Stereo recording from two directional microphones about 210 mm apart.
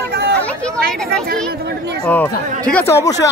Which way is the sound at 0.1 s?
50° right (ahead or behind).